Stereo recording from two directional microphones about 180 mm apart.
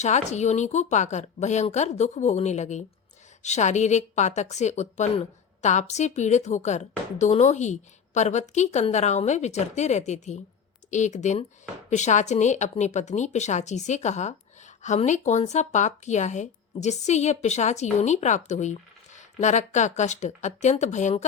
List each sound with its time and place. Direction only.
0.0 s speech: 40° left (ahead or behind)